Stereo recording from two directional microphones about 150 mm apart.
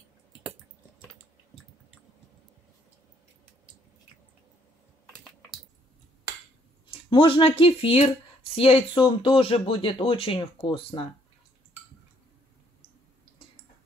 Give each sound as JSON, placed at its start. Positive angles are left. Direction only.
{"t": 5.1, "sound": "typing", "side_deg": 5}
{"t": 6.9, "sound": "speech", "side_deg": 35}